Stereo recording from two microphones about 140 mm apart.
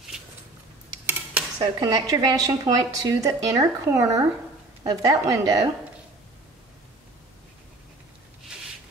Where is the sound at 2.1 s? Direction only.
25° right (ahead or behind).